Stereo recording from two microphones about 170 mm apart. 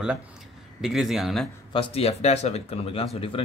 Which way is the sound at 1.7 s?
35° left (ahead or behind).